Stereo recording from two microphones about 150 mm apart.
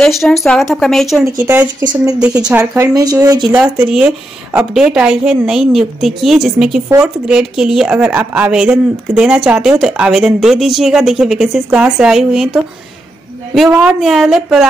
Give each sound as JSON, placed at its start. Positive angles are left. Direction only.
{"t": 0.0, "sound": "a woman's voice", "side_deg": 0}
{"t": 1.4, "sound": "speech", "side_deg": -10}
{"t": 1.9, "sound": "speech", "side_deg": -25}
{"t": 3.7, "sound": "a woman's voice", "side_deg": -5}
{"t": 13.6, "sound": "a woman's voice", "side_deg": -5}